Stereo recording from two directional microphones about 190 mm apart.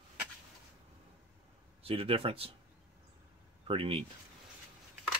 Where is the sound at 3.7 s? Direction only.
30° right (ahead or behind).